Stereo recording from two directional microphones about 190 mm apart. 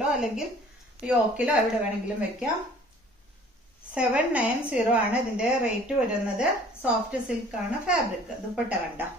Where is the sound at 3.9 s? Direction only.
5° right (ahead or behind).